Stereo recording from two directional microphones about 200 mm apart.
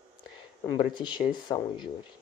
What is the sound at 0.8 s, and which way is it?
Speech, 25° left (ahead or behind).